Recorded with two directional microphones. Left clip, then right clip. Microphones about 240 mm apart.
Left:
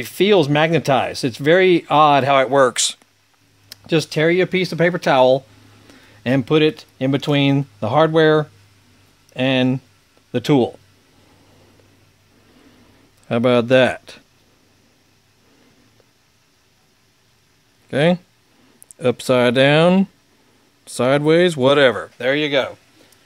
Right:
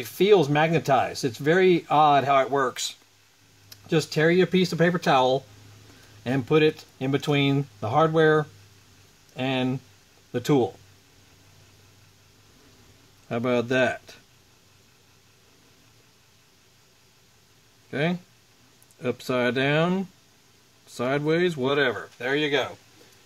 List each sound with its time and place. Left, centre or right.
0.0 s speech: left
3.8 s speech: left
13.3 s speech: left
17.8 s speech: left